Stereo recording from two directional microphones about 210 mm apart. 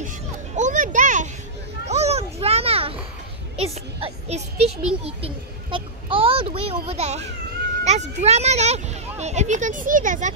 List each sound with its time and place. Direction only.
0.6 s music: 35° right (ahead or behind)
1.9 s a sound: 30° right (ahead or behind)
5.0 s a child's voice: 25° right (ahead or behind)
7.8 s children playing: 30° right (ahead or behind)
8.2 s a child's voice: 30° right (ahead or behind)